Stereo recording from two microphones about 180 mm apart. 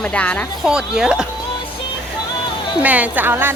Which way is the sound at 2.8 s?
10° right (ahead or behind).